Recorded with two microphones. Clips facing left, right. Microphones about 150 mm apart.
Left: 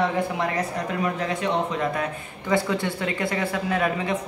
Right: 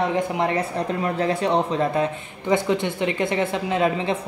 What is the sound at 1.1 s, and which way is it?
Speech, 35° right (ahead or behind).